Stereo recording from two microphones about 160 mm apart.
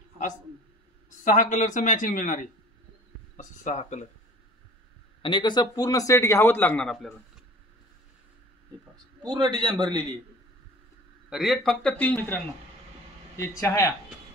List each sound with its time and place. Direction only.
1.2 s speech: 50° left (ahead or behind)
3.3 s speech: 45° left (ahead or behind)
5.2 s a man's voice: 30° left (ahead or behind); by 7.2 s centre (ahead or behind)
9.2 s a man's voice: 25° right (ahead or behind)
11.2 s a man's voice: centre (ahead or behind)
13.4 s a man's voice: 15° left (ahead or behind)